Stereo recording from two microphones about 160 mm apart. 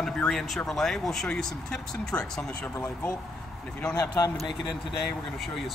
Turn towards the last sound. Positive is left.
turn(degrees=30)  # may be behind; listen again after turning